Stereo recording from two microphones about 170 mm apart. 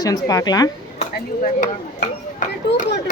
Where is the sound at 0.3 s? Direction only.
20° left (ahead or behind).